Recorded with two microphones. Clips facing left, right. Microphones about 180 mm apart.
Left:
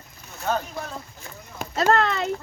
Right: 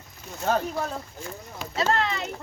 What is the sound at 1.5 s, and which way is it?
Speech, 50° left (ahead or behind).